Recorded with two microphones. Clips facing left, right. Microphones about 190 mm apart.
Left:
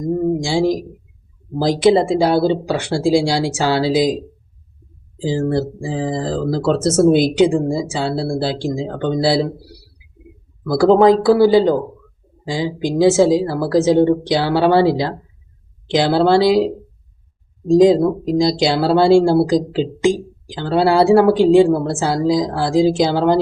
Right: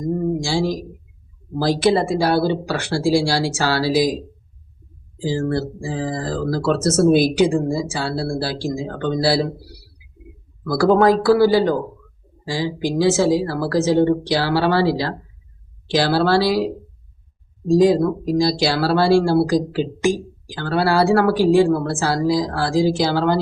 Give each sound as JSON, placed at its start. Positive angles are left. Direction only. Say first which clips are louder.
{"t": 0.4, "sound": "speech", "louder": "left 4 dB", "side_deg": 20}
{"t": 5.2, "sound": "speech", "louder": "left 3 dB", "side_deg": 20}
{"t": 10.6, "sound": "speech", "louder": "left 3 dB", "side_deg": 20}